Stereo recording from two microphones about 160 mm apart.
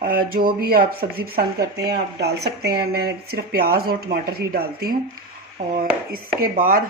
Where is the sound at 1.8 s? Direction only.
85° right; by 6.8 s 60° right (ahead or behind).